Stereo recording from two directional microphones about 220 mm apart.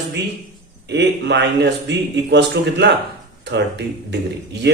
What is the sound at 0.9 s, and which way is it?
A man's voice, 50° right (ahead or behind).